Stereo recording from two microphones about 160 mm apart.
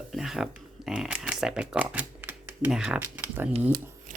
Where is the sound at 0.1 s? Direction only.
Centre (ahead or behind).